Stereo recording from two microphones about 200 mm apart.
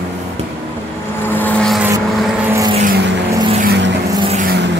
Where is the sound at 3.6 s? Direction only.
60° right (ahead or behind).